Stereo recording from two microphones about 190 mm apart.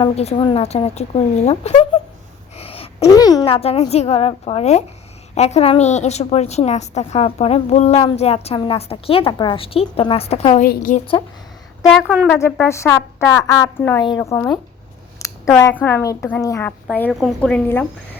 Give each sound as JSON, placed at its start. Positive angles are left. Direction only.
{"t": 0.0, "sound": "a woman's voice", "side_deg": 30}
{"t": 2.6, "sound": "a sound", "side_deg": 30}
{"t": 3.1, "sound": "speech", "side_deg": 20}
{"t": 3.4, "sound": "a woman's voice", "side_deg": 30}
{"t": 10.7, "sound": "a woman's voice", "side_deg": 45}
{"t": 11.9, "sound": "a woman's voice", "side_deg": -5}
{"t": 12.3, "sound": "a woman's voice", "side_deg": 10}
{"t": 15.2, "sound": "a sound", "side_deg": 15}
{"t": 15.5, "sound": "a woman's voice", "side_deg": 10}